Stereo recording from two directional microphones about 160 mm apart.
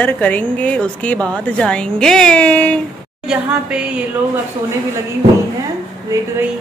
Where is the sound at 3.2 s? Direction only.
5° right (ahead or behind).